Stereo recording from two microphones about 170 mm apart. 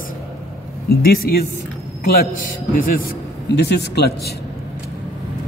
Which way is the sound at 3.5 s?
85° left.